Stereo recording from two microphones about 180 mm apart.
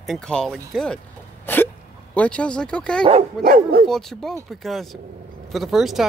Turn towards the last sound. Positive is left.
turn(degrees=0)  # may be behind; listen again after turning